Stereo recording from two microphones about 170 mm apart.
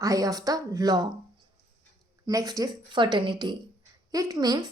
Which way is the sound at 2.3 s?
20° right (ahead or behind).